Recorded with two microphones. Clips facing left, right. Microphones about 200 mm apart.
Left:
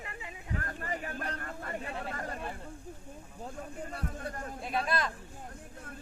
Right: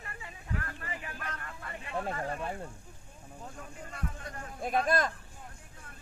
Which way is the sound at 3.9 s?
35° left (ahead or behind).